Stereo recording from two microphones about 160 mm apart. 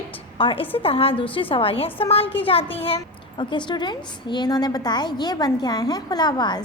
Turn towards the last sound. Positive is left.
turn(degrees=25)  # may be behind; listen again after turning